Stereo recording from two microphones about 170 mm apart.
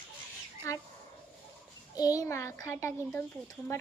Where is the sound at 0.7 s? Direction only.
15° left (ahead or behind).